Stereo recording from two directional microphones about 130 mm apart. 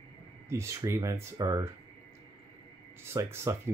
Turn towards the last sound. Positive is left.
turn(degrees=-20)  # may be behind; listen again after turning